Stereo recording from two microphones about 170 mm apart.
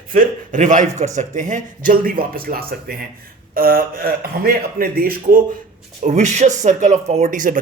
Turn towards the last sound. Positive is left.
turn(degrees=-50)  # may be behind; listen again after turning